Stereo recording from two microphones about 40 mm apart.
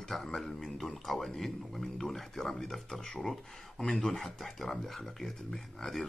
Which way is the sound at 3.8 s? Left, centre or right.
Left.